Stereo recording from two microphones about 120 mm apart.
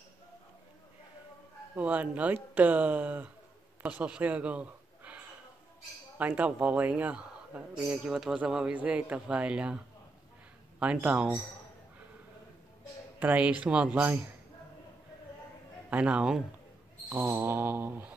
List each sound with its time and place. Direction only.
1.8 s a man's voice: 10° right (ahead or behind)
10.8 s a man's voice: 10° right (ahead or behind)
13.2 s a man's voice: 15° right (ahead or behind)
15.9 s a man's voice: 10° right (ahead or behind)
17.1 s a man's voice: 20° right (ahead or behind)